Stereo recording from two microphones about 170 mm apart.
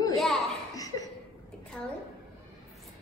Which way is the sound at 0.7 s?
20° left (ahead or behind).